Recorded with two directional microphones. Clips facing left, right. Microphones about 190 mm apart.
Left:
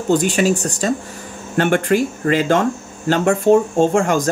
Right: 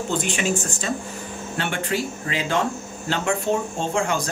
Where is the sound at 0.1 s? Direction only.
40° left (ahead or behind).